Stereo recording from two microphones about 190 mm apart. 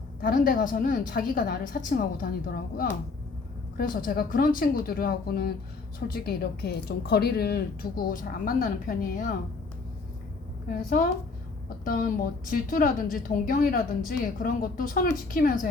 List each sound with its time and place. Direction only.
0.2 s a woman's voice: 50° left (ahead or behind)
3.8 s a woman's voice: 50° left (ahead or behind)
10.7 s a woman's voice: 50° left (ahead or behind)
12.5 s a woman's voice: 45° left (ahead or behind)